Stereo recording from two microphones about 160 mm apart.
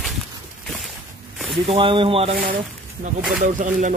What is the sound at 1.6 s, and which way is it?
Speech, 35° right (ahead or behind).